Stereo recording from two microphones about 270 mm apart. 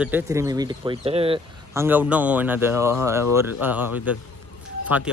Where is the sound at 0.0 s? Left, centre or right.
Centre.